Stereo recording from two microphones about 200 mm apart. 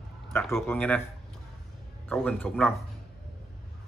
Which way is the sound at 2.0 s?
5° left (ahead or behind).